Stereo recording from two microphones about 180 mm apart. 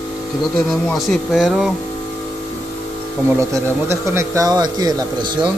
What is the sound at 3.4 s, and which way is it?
Speech, 15° right (ahead or behind).